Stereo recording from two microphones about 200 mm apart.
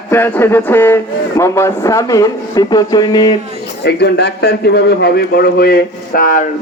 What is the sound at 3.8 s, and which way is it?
A man's voice, 55° left (ahead or behind).